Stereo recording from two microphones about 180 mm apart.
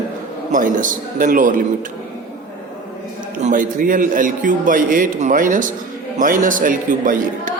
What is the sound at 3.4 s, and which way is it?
A man's voice, 45° right (ahead or behind).